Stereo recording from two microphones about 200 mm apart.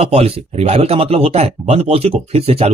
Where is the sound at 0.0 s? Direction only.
30° right (ahead or behind).